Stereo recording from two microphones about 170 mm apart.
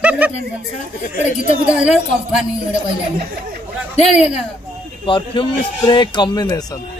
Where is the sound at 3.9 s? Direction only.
35° left (ahead or behind); by 6.6 s 20° left (ahead or behind).